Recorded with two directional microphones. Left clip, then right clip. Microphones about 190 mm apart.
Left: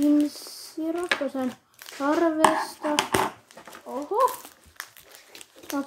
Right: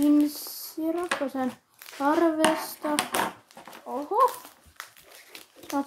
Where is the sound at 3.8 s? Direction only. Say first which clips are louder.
Even; 20° right (ahead or behind).